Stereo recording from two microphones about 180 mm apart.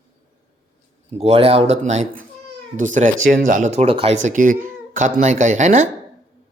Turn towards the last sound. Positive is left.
turn(degrees=-40)  # may be behind; listen again after turning